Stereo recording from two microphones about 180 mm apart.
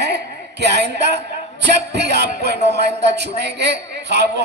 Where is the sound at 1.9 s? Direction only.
70° right (ahead or behind).